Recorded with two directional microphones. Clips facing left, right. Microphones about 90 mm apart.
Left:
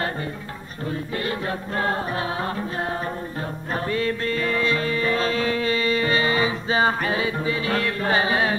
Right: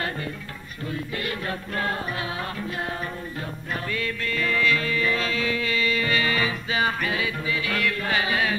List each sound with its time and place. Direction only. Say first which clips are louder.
0.8 s music: left 3 dB; 30° left (ahead or behind)